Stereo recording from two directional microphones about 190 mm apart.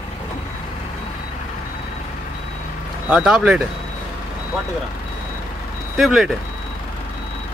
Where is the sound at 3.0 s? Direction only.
5° right (ahead or behind).